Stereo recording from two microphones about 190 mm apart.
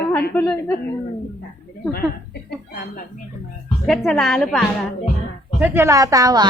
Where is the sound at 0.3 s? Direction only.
10° left (ahead or behind).